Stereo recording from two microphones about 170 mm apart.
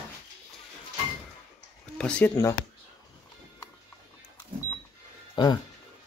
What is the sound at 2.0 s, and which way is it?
Speech, 5° left (ahead or behind).